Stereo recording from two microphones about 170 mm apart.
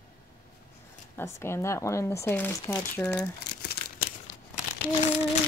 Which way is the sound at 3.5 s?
65° left (ahead or behind).